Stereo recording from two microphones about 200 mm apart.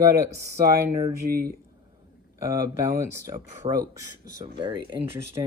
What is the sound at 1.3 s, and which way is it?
Speech, 50° right (ahead or behind).